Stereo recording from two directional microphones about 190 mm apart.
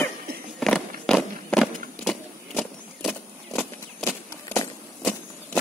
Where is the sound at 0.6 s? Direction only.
Centre (ahead or behind).